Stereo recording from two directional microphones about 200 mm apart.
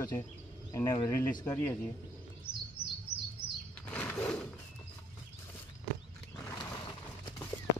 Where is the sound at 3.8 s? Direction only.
5° left (ahead or behind).